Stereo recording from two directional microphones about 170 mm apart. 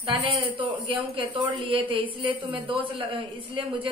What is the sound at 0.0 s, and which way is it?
A man's voice, 30° right (ahead or behind).